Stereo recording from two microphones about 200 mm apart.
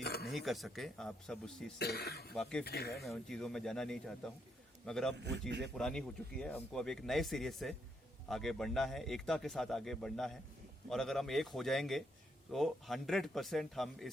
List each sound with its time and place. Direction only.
0.0 s a sound: 55° left (ahead or behind)
0.3 s speech: centre (ahead or behind)
1.8 s speech: 55° left (ahead or behind)
2.3 s speech: 5° left (ahead or behind)
2.6 s speech: 50° left (ahead or behind)
3.0 s speech: centre (ahead or behind)
5.1 s speech: 60° right (ahead or behind)
5.7 s speech: 5° left (ahead or behind)